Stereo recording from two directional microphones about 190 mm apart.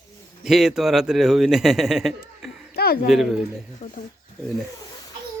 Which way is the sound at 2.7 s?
55° left (ahead or behind).